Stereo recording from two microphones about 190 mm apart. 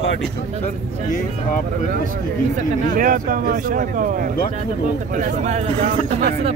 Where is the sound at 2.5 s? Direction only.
45° right (ahead or behind).